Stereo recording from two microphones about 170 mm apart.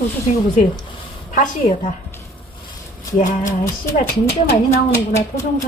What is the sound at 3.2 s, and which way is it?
Speech, 50° left (ahead or behind).